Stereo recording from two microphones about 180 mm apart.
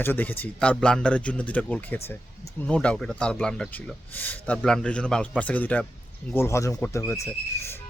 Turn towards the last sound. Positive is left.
turn(degrees=15)  # may be behind; listen again after turning